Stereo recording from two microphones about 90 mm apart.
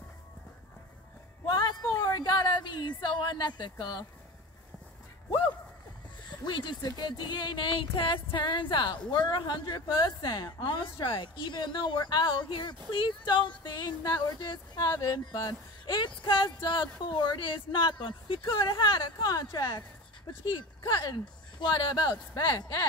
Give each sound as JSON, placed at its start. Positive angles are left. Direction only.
{"t": 1.4, "sound": "a sound", "side_deg": 50}
{"t": 2.0, "sound": "a woman's voice", "side_deg": 45}
{"t": 6.4, "sound": "speech", "side_deg": 55}
{"t": 20.4, "sound": "speech", "side_deg": 60}